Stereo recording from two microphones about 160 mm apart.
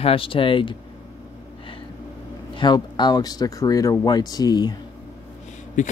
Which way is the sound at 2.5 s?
30° left (ahead or behind).